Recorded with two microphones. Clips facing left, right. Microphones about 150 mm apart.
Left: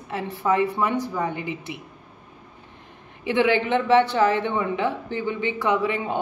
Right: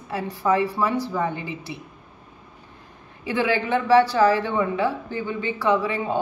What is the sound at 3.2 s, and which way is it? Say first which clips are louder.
A woman's voice: left 3 dB; 20° left (ahead or behind).